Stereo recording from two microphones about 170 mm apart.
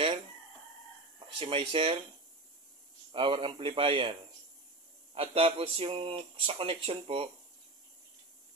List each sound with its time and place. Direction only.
1.4 s speech: 30° right (ahead or behind)
3.1 s speech: 30° right (ahead or behind)
5.1 s speech: 35° right (ahead or behind)